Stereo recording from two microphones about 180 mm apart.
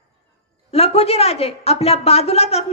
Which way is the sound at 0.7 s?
35° left (ahead or behind).